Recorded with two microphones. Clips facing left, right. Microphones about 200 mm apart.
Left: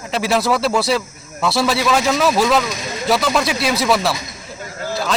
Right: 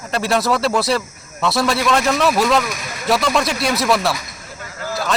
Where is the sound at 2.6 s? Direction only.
20° left (ahead or behind).